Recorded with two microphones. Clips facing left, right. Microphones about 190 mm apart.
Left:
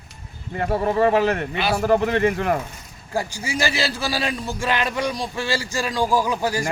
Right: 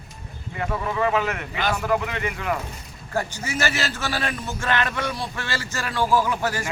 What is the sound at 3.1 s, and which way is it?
Speech, 10° left (ahead or behind).